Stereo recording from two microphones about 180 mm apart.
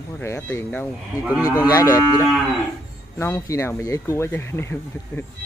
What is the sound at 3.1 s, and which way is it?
Speech, 15° left (ahead or behind).